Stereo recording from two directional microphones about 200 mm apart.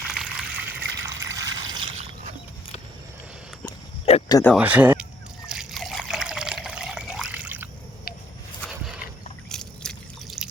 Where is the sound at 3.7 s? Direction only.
25° left (ahead or behind).